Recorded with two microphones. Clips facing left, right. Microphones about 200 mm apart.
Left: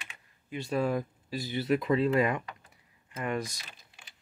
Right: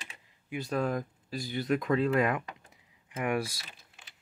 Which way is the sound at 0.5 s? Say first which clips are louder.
Left 1 dB; centre (ahead or behind).